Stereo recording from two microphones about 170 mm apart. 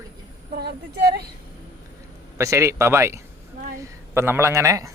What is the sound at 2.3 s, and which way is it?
Speech, 15° right (ahead or behind).